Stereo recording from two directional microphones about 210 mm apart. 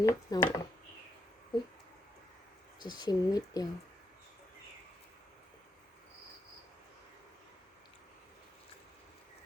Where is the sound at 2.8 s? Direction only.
20° left (ahead or behind).